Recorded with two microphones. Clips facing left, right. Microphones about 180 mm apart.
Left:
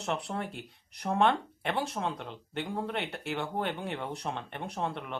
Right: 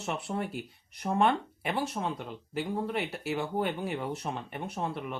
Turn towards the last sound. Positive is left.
turn(degrees=-5)  # may be behind; listen again after turning